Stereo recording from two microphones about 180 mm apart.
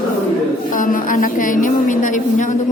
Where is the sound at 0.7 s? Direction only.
50° left (ahead or behind).